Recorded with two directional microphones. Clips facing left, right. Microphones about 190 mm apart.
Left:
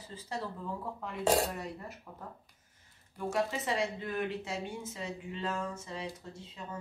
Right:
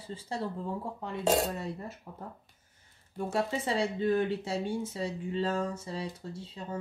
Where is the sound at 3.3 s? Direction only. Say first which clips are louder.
Right 1 dB; 30° right (ahead or behind).